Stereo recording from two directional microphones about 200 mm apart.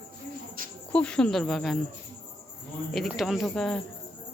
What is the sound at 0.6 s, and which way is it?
Cricket, 45° right (ahead or behind).